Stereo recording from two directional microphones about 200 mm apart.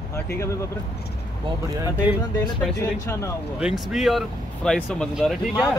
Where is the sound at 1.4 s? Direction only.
15° right (ahead or behind).